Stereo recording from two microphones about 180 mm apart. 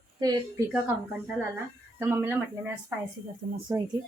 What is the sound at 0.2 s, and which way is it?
A woman's voice, 20° right (ahead or behind).